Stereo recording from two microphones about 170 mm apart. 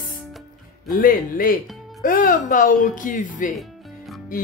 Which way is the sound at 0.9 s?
55° left (ahead or behind).